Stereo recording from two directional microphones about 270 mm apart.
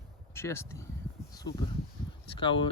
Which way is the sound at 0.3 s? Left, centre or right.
Centre.